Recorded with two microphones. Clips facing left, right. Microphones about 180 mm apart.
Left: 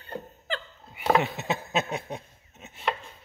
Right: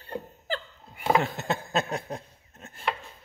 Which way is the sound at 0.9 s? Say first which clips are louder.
Left 1 dB; centre (ahead or behind).